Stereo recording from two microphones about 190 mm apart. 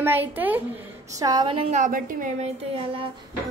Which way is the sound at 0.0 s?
10° right (ahead or behind).